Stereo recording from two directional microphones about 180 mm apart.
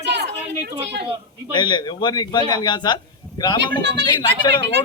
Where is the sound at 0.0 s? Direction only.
70° right (ahead or behind).